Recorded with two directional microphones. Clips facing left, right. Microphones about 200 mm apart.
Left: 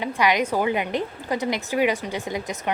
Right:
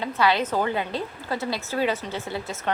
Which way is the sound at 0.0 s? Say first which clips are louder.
Left 1 dB; 15° left (ahead or behind).